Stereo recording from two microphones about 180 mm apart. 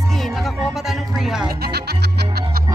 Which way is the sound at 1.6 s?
65° right (ahead or behind).